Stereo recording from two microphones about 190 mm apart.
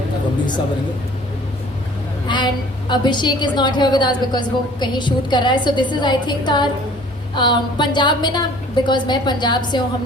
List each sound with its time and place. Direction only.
2.2 s a woman's voice: 25° left (ahead or behind)